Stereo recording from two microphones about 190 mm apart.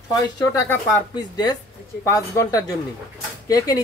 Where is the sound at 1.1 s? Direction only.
20° left (ahead or behind).